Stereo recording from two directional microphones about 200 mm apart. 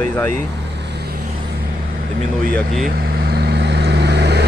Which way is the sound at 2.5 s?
Centre (ahead or behind).